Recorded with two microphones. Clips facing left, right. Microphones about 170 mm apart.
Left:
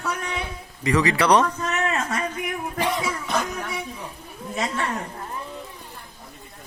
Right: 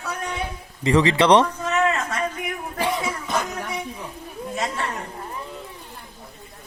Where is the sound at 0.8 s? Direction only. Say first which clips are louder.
Right 3 dB; 25° right (ahead or behind).